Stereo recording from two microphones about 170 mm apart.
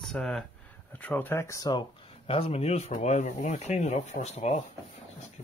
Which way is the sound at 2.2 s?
35° left (ahead or behind).